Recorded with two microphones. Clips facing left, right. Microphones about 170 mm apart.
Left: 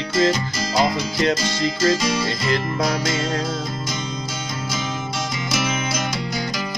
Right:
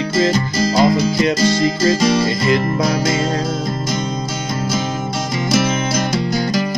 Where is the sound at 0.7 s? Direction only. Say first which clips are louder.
Right 5 dB; 40° right (ahead or behind).